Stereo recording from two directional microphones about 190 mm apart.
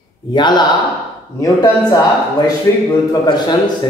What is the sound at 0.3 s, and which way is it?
A woman's voice, 25° left (ahead or behind).